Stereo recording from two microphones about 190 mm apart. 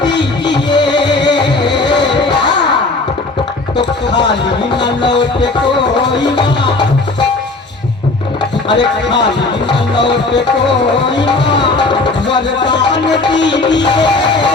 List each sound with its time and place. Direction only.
0.0 s music: 65° left (ahead or behind)
0.5 s music: 25° left (ahead or behind)
2.3 s music: 65° left (ahead or behind)
3.8 s music: 65° left (ahead or behind)
6.3 s music: 25° left (ahead or behind)
8.7 s music: 65° left (ahead or behind)
11.3 s music: 65° left (ahead or behind)
12.7 s music: 65° left (ahead or behind)